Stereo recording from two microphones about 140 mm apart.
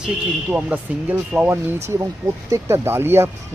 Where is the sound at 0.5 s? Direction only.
10° right (ahead or behind).